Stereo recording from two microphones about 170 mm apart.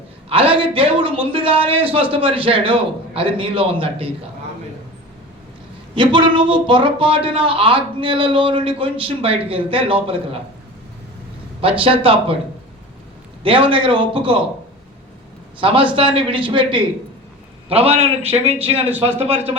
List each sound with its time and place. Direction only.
0.3 s speech: 30° right (ahead or behind)
5.9 s speech: 30° right (ahead or behind)
11.6 s speech: 30° right (ahead or behind)
13.4 s speech: 30° right (ahead or behind)
15.6 s speech: 30° right (ahead or behind)